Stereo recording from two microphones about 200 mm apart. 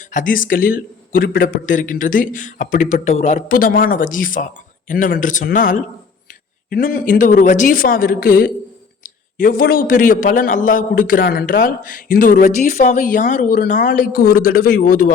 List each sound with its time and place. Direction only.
0.0 s a man's voice: 40° left (ahead or behind)